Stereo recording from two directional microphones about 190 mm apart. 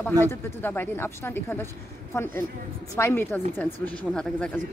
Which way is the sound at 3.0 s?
10° left (ahead or behind).